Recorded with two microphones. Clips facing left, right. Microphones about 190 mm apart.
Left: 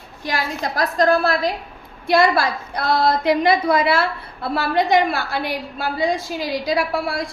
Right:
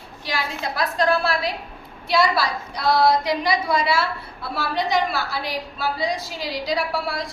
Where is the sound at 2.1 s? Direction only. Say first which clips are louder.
Left 4 dB; 50° left (ahead or behind).